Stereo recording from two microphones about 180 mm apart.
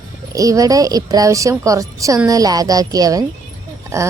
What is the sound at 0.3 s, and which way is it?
A woman's voice, 20° right (ahead or behind).